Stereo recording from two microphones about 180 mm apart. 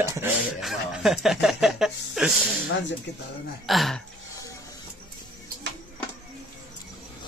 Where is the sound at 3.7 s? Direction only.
Centre (ahead or behind).